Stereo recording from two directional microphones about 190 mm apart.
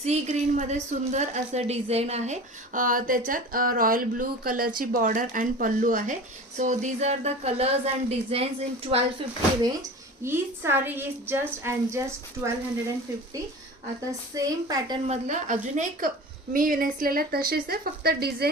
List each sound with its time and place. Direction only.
0.0 s a woman's voice: 35° right (ahead or behind)
10.2 s a woman's voice: 10° right (ahead or behind)
14.3 s a woman's voice: 20° right (ahead or behind)
15.0 s a woman's voice: 35° right (ahead or behind); by 18.4 s 55° right (ahead or behind)